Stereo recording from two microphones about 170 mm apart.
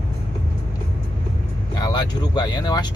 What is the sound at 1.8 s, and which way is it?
Speech, 25° left (ahead or behind).